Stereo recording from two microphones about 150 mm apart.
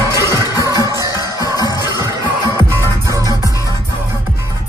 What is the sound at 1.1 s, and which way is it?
Music, 25° left (ahead or behind).